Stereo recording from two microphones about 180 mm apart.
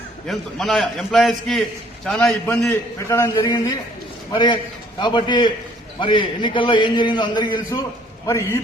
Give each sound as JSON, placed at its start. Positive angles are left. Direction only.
{"t": 0.3, "sound": "a man's voice", "side_deg": 0}
{"t": 2.5, "sound": "a man's voice", "side_deg": 15}